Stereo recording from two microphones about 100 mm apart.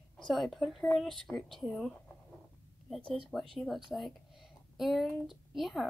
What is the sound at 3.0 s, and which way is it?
Speech, 65° right (ahead or behind).